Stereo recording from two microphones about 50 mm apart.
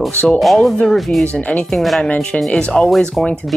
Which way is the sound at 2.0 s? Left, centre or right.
Left.